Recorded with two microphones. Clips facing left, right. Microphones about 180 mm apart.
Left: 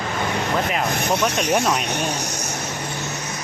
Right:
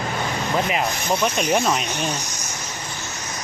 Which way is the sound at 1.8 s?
65° left (ahead or behind).